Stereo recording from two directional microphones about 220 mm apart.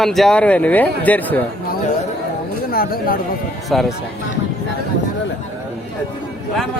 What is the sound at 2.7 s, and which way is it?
Speech, 40° left (ahead or behind).